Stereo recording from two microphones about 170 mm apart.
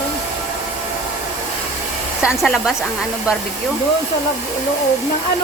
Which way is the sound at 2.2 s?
Centre (ahead or behind).